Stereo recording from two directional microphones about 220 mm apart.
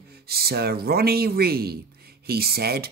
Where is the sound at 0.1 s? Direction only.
45° right (ahead or behind).